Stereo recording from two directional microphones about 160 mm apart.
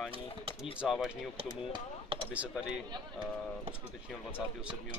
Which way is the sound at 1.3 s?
35° right (ahead or behind).